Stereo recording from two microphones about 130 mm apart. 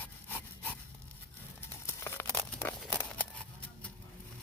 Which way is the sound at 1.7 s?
20° left (ahead or behind).